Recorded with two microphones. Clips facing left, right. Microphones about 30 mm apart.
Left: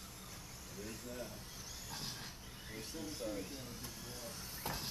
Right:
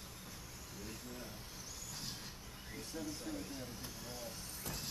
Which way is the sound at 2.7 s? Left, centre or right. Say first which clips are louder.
Right 1 dB; centre.